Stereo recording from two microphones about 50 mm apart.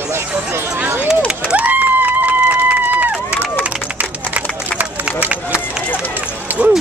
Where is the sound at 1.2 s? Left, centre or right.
Right.